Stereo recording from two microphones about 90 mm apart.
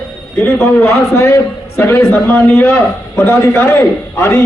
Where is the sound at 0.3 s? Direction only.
30° left (ahead or behind).